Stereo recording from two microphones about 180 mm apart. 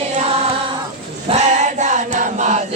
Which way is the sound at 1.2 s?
40° right (ahead or behind).